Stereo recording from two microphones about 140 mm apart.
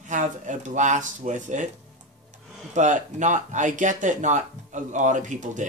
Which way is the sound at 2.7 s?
60° right (ahead or behind).